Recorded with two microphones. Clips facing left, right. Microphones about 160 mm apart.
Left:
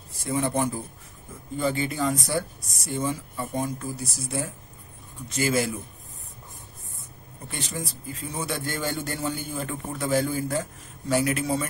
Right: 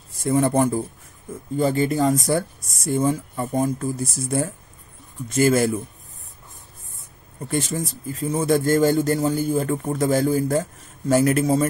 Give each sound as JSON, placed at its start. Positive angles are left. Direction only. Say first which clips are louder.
{"t": 0.2, "sound": "speech", "louder": "right 7 dB", "side_deg": -50}
{"t": 7.4, "sound": "speech", "louder": "right 9 dB", "side_deg": -45}